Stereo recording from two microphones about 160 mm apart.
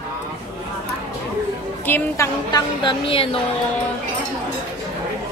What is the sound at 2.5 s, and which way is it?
Speech, 25° left (ahead or behind).